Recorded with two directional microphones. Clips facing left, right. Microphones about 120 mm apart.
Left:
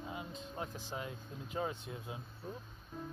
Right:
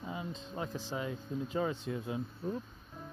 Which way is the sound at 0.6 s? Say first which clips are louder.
Right 5 dB; 90° right.